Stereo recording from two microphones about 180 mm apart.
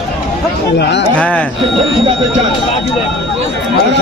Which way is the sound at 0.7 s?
70° left (ahead or behind).